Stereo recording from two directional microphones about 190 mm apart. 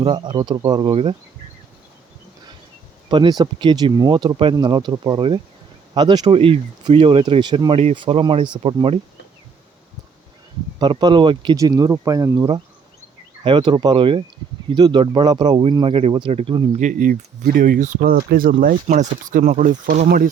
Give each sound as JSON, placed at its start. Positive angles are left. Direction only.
{"t": 0.0, "sound": "speech", "side_deg": -25}
{"t": 3.1, "sound": "speech", "side_deg": -25}
{"t": 10.8, "sound": "speech", "side_deg": -25}
{"t": 16.8, "sound": "speech", "side_deg": -45}